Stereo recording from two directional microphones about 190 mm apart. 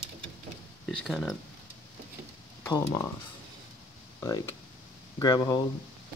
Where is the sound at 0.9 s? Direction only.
Centre (ahead or behind).